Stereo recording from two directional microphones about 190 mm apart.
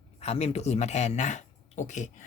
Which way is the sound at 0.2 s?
35° left (ahead or behind).